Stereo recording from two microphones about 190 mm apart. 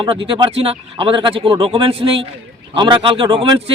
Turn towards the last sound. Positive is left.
turn(degrees=-30)  # may be behind; listen again after turning